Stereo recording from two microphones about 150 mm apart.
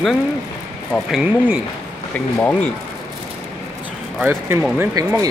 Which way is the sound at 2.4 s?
10° left (ahead or behind).